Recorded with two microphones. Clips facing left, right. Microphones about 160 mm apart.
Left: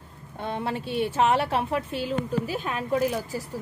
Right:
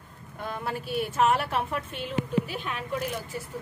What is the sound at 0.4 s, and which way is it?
A woman's voice, 25° left (ahead or behind).